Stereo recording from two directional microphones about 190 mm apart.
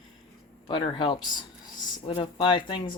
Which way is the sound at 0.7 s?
25° left (ahead or behind).